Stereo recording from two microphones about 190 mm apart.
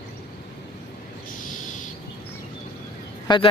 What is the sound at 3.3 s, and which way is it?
Speech, 25° left (ahead or behind).